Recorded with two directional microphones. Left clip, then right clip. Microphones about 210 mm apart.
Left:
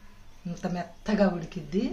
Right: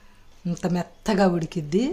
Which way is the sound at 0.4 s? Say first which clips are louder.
Right 6 dB; 50° right (ahead or behind).